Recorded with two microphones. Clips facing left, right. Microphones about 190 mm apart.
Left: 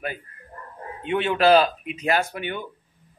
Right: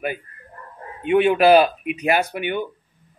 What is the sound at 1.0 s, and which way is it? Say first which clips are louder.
Speech: right 5 dB; 15° right (ahead or behind).